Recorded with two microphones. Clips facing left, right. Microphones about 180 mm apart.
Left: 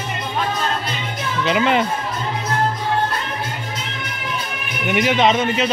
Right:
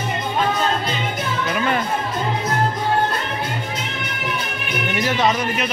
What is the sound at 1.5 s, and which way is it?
Speech, 20° left (ahead or behind).